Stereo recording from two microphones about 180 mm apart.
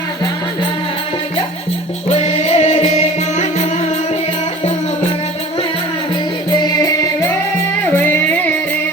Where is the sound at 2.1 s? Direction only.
40° left (ahead or behind).